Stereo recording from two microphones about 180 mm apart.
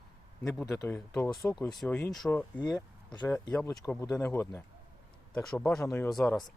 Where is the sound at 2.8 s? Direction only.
25° left (ahead or behind).